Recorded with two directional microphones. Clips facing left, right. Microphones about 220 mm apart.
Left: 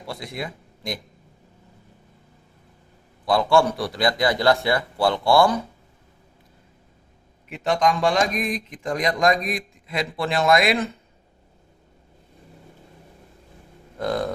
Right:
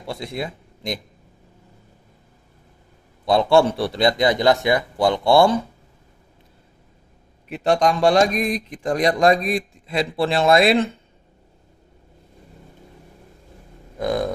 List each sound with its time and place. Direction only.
0.0 s speech: 25° right (ahead or behind)
3.2 s a man's voice: 25° right (ahead or behind)
7.5 s a man's voice: 35° right (ahead or behind)
14.0 s speech: 15° right (ahead or behind)